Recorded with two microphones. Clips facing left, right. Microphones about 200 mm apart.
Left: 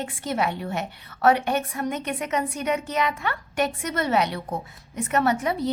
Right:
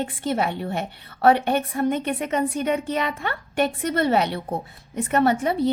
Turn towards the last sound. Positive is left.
turn(degrees=-30)  # may be behind; listen again after turning